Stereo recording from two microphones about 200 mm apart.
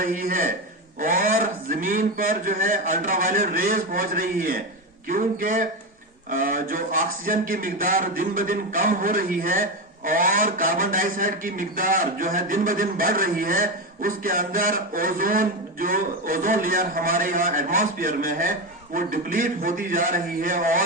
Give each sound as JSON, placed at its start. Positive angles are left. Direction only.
{"t": 0.0, "sound": "a man's voice", "side_deg": -45}